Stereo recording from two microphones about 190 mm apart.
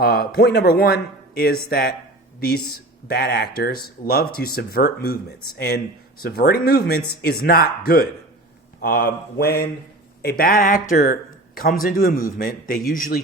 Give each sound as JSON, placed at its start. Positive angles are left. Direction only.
{"t": 0.0, "sound": "speech", "side_deg": 55}
{"t": 3.1, "sound": "speech", "side_deg": 55}